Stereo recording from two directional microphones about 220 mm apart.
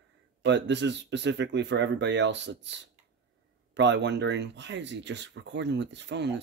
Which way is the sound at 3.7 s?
55° right (ahead or behind).